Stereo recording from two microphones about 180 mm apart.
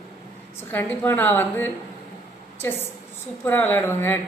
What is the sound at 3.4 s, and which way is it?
Speech, 10° left (ahead or behind).